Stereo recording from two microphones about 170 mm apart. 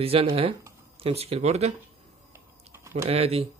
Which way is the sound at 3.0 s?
35° right (ahead or behind).